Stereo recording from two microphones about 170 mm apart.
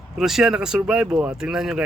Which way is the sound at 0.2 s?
5° right (ahead or behind).